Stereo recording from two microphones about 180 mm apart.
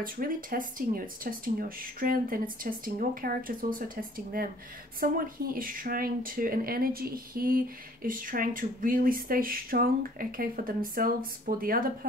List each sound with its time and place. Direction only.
0.0 s speech: 50° right (ahead or behind)